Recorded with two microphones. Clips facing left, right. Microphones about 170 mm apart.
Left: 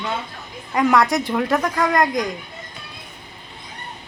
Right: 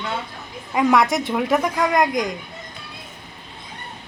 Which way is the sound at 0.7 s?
5° right (ahead or behind).